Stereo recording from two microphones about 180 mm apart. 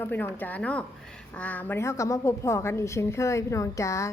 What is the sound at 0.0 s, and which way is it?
A woman's voice, 10° left (ahead or behind).